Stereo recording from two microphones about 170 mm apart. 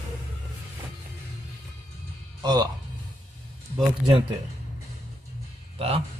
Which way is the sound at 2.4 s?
25° right (ahead or behind).